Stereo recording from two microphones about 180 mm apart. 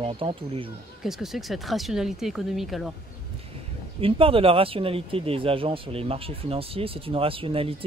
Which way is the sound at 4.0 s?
30° right (ahead or behind).